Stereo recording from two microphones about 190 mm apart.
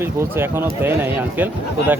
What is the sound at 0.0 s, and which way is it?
Speech, 10° right (ahead or behind).